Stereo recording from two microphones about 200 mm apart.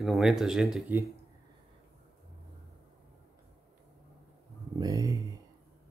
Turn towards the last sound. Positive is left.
turn(degrees=-15)  # may be behind; listen again after turning